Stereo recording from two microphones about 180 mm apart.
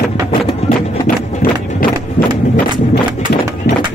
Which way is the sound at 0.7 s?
50° left (ahead or behind).